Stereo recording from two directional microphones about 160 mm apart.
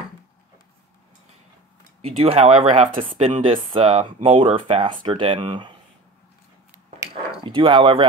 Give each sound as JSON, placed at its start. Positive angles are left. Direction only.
{"t": 2.0, "sound": "speech", "side_deg": -35}
{"t": 7.4, "sound": "speech", "side_deg": -30}